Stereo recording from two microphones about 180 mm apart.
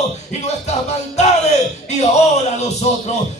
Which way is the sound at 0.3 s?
40° left (ahead or behind).